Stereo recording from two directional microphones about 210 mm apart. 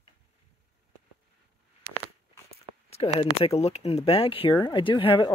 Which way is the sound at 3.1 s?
30° left (ahead or behind).